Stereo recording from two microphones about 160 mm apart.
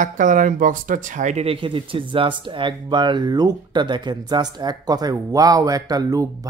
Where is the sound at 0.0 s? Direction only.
55° right (ahead or behind).